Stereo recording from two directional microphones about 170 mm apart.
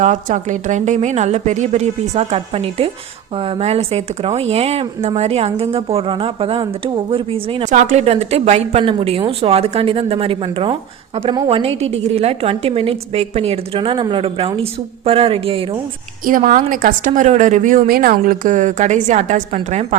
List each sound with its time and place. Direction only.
0.0 s speech: 45° right (ahead or behind)
16.2 s speech: 50° right (ahead or behind)